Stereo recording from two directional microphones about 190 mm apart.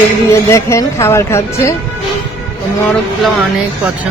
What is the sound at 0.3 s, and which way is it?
Speech, 15° left (ahead or behind).